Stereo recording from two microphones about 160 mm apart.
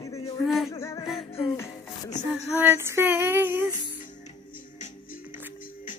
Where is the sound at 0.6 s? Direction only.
20° left (ahead or behind).